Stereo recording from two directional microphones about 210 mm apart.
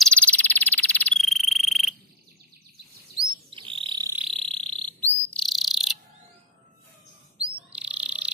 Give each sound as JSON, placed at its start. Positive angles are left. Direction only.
{"t": 0.0, "sound": "frog", "side_deg": 5}
{"t": 3.4, "sound": "chirp", "side_deg": -25}
{"t": 4.3, "sound": "cricket", "side_deg": 5}
{"t": 7.3, "sound": "bird", "side_deg": -5}